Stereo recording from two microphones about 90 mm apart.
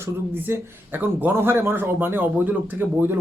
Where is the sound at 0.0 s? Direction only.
25° right (ahead or behind).